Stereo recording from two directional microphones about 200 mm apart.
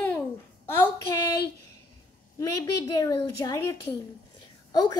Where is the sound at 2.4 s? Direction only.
15° left (ahead or behind).